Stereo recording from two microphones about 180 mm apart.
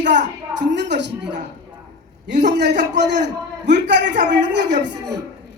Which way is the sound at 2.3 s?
70° right (ahead or behind).